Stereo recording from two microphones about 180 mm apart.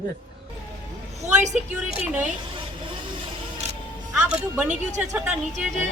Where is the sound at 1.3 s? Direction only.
40° right (ahead or behind).